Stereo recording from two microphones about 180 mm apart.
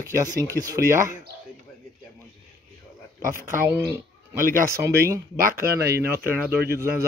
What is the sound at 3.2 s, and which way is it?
Speech, 50° right (ahead or behind).